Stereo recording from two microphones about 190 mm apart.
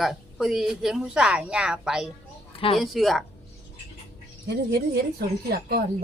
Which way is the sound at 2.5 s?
30° left (ahead or behind).